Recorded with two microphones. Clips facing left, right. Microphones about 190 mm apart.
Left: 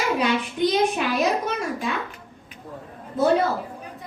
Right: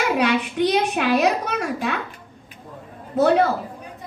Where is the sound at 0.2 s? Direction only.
70° right (ahead or behind).